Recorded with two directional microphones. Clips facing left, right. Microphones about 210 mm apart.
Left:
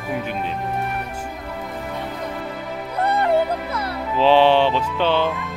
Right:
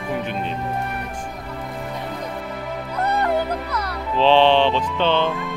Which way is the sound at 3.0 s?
25° left (ahead or behind).